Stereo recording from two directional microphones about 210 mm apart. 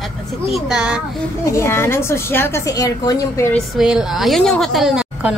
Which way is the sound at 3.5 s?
Centre (ahead or behind).